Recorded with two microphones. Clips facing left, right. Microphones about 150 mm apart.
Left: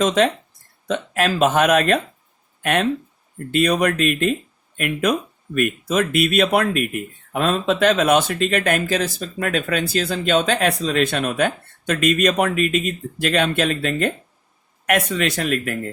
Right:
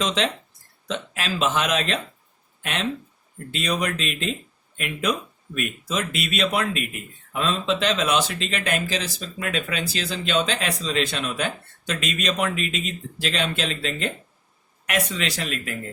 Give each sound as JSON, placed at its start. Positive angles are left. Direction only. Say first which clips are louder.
{"t": 0.0, "sound": "speech", "louder": "left 7 dB", "side_deg": 50}
{"t": 3.5, "sound": "speech", "louder": "left 8 dB", "side_deg": 55}